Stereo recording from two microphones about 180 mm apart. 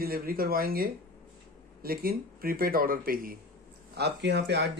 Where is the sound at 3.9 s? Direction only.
70° right (ahead or behind).